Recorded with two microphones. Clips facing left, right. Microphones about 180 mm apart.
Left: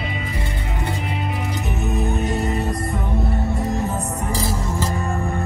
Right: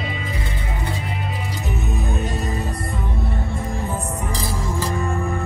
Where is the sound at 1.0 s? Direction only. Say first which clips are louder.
Left 3 dB; 65° left (ahead or behind).